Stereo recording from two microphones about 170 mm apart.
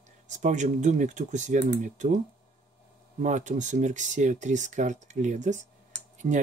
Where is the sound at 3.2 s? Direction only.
45° right (ahead or behind).